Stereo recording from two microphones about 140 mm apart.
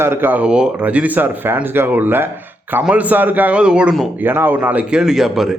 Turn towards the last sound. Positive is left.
turn(degrees=0)  # may be behind; listen again after turning